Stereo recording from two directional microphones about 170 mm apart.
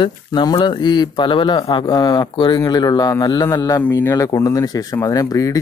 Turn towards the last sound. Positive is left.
turn(degrees=20)  # may be behind; listen again after turning